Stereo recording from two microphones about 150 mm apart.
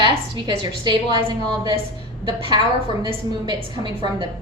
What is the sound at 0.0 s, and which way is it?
A woman's voice, 30° right (ahead or behind).